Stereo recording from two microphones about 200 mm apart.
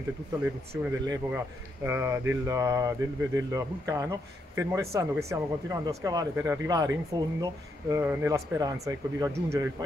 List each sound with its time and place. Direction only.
0.4 s speech: 15° right (ahead or behind)